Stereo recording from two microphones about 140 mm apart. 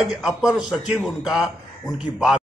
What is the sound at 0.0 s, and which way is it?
A man's voice, 5° right (ahead or behind).